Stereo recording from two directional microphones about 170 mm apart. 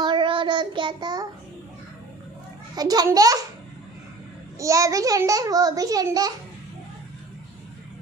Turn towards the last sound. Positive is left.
turn(degrees=-20)  # may be behind; listen again after turning